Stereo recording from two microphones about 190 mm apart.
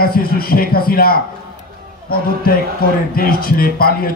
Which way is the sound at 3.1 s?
50° left (ahead or behind).